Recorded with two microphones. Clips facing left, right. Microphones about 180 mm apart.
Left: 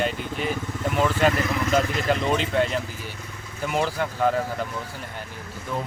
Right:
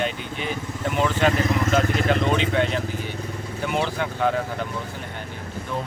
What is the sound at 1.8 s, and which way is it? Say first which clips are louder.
Speech: right 3 dB; 50° right (ahead or behind).